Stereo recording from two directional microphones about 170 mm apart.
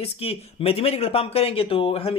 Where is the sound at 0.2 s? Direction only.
35° left (ahead or behind).